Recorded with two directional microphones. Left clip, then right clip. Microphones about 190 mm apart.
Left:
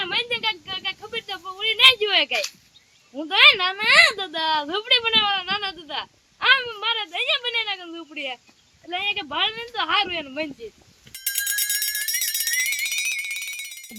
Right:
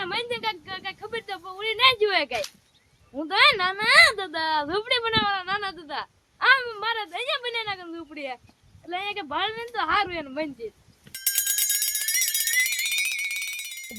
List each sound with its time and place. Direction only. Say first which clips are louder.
0.0 s a sound: left 4 dB; 10° right (ahead or behind)
3.2 s speech: left 4 dB; 10° right (ahead or behind)
11.1 s bicycle bell: left 2 dB; centre (ahead or behind)